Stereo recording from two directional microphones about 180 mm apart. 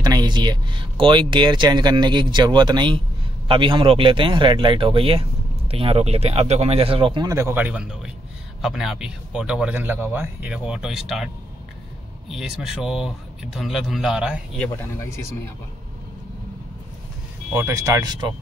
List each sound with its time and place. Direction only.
0.0 s speech: 20° right (ahead or behind); by 11.2 s centre (ahead or behind)
12.3 s speech: centre (ahead or behind)
17.5 s speech: 15° right (ahead or behind)